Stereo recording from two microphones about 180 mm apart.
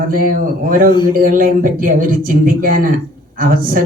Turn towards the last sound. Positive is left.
turn(degrees=-50)  # may be behind; listen again after turning